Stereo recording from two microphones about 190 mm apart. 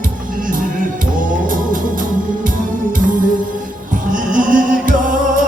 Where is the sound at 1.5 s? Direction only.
45° right (ahead or behind).